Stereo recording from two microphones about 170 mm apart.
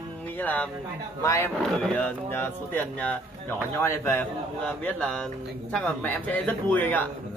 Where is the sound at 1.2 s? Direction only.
15° left (ahead or behind).